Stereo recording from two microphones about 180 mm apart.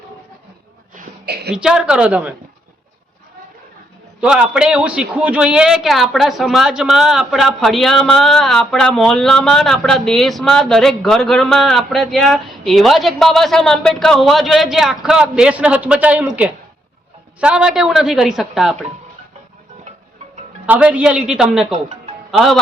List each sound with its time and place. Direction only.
1.2 s a woman's voice: 65° right (ahead or behind)
1.5 s a man's voice: 5° right (ahead or behind)
4.2 s a man's voice: 5° right (ahead or behind)
17.4 s a man's voice: 5° right (ahead or behind)
20.7 s a man's voice: 10° right (ahead or behind)
21.7 s speech: 40° right (ahead or behind)
22.3 s music: centre (ahead or behind)